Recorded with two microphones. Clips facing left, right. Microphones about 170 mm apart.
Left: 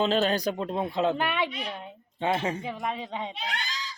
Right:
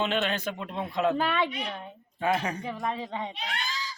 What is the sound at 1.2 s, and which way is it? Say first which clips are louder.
A woman's voice: right 1 dB; 15° left (ahead or behind).